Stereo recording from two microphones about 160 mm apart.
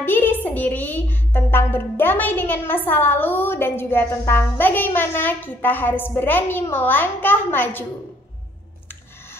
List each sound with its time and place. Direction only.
0.0 s a woman's voice: 10° left (ahead or behind)